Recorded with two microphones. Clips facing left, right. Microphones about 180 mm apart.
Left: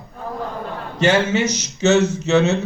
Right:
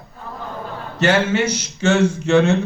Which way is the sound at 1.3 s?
10° right (ahead or behind).